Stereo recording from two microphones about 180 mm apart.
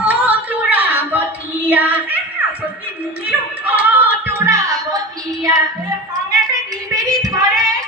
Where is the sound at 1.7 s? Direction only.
10° right (ahead or behind).